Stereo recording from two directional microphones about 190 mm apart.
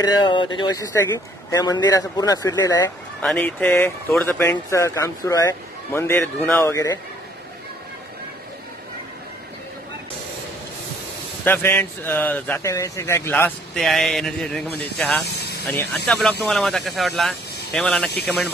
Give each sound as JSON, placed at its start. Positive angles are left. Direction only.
{"t": 0.0, "sound": "speech", "side_deg": 25}
{"t": 3.2, "sound": "speech", "side_deg": 5}
{"t": 11.4, "sound": "speech", "side_deg": 10}